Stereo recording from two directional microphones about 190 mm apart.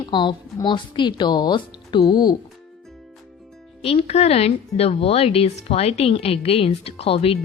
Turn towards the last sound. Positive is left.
turn(degrees=30)  # may be behind; listen again after turning